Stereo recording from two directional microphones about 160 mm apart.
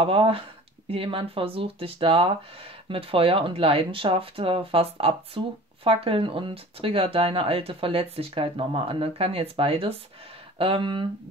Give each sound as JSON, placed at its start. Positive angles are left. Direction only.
{"t": 0.0, "sound": "speech", "side_deg": -35}